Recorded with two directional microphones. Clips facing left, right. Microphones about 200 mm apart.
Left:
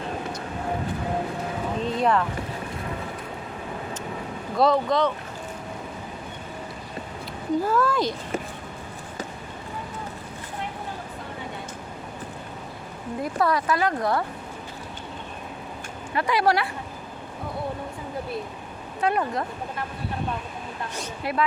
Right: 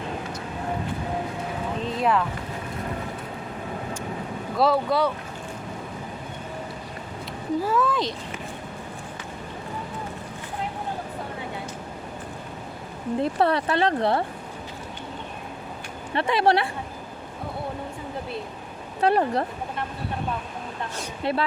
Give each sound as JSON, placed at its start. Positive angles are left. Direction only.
{"t": 1.8, "sound": "boat", "side_deg": 0}
{"t": 4.5, "sound": "speech", "side_deg": -5}
{"t": 7.7, "sound": "speech", "side_deg": 0}
{"t": 13.2, "sound": "speech", "side_deg": -30}
{"t": 16.1, "sound": "speech", "side_deg": -25}
{"t": 19.0, "sound": "speech", "side_deg": -35}
{"t": 21.3, "sound": "speech", "side_deg": -25}